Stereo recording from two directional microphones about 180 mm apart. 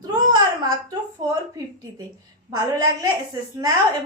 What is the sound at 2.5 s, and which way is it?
Speech, 20° right (ahead or behind).